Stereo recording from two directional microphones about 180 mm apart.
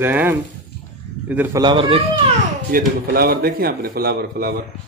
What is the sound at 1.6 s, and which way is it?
Speech, 30° right (ahead or behind).